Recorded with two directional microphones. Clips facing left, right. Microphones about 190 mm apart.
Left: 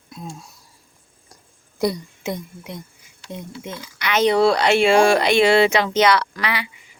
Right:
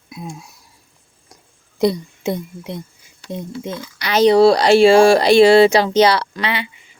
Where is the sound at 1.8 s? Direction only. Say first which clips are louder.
Right 5 dB; 25° right (ahead or behind).